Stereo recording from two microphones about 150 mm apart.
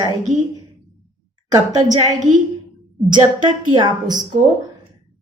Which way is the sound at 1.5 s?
25° right (ahead or behind).